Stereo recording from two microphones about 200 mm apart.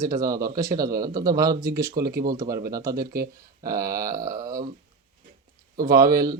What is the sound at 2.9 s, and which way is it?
Speech, 50° right (ahead or behind).